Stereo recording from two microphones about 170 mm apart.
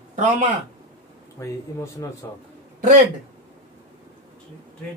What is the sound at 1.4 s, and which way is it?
Speech, 20° left (ahead or behind).